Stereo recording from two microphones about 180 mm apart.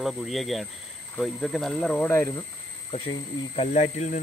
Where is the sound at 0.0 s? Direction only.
Centre (ahead or behind).